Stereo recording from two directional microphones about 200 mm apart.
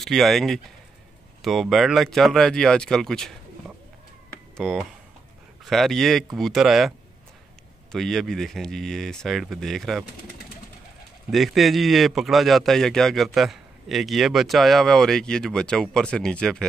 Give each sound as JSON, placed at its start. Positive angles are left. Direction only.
{"t": 0.0, "sound": "a man's voice", "side_deg": 0}
{"t": 4.3, "sound": "a sound", "side_deg": 0}
{"t": 5.7, "sound": "a man's voice", "side_deg": 0}
{"t": 7.9, "sound": "a man's voice", "side_deg": 0}
{"t": 11.2, "sound": "a man's voice", "side_deg": 0}